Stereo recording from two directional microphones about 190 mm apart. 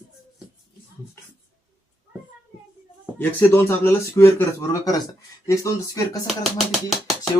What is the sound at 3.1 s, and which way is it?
A man's voice, 10° left (ahead or behind).